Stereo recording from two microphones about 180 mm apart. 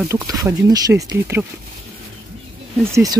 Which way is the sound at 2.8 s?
15° right (ahead or behind).